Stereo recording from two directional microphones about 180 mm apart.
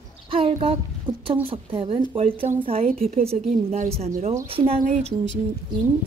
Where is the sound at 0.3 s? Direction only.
30° right (ahead or behind).